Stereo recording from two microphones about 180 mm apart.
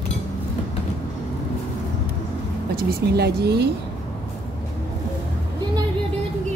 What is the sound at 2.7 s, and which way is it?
Speech, 60° right (ahead or behind).